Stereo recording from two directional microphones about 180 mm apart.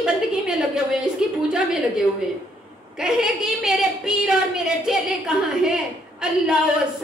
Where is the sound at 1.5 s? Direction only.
5° right (ahead or behind).